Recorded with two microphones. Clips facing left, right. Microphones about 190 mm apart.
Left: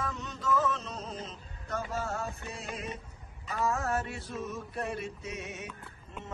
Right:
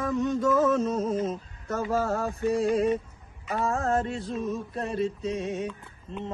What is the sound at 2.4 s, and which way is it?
Male singing, 35° right (ahead or behind).